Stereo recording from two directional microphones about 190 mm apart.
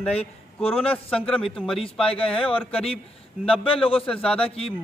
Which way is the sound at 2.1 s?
30° left (ahead or behind).